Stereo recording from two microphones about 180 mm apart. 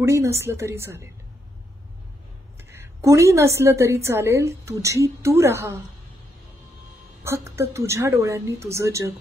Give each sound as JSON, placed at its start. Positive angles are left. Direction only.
{"t": 0.0, "sound": "a woman's voice", "side_deg": -15}
{"t": 2.7, "sound": "a woman's voice", "side_deg": -15}
{"t": 7.2, "sound": "a woman's voice", "side_deg": -15}